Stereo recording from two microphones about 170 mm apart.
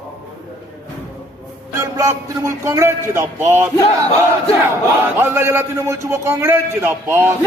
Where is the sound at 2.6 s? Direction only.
15° right (ahead or behind).